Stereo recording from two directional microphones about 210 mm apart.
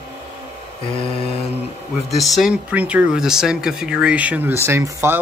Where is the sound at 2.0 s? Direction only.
Centre (ahead or behind).